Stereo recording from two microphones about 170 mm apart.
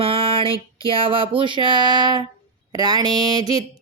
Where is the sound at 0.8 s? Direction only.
30° right (ahead or behind).